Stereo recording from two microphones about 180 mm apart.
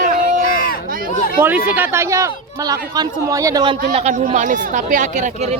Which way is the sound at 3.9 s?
40° right (ahead or behind).